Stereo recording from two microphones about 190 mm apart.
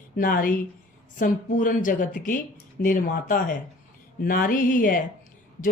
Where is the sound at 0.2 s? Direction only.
50° left (ahead or behind).